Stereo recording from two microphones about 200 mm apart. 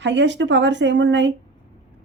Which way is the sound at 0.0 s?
65° right (ahead or behind).